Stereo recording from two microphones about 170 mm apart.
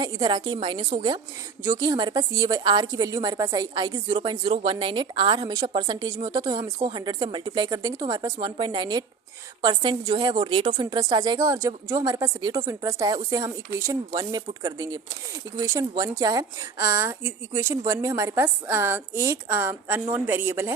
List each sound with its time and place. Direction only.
0.0 s a woman's voice: 25° right (ahead or behind)
1.6 s a woman's voice: 20° right (ahead or behind)